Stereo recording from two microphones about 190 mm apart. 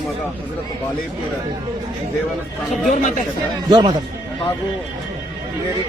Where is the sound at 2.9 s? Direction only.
40° left (ahead or behind).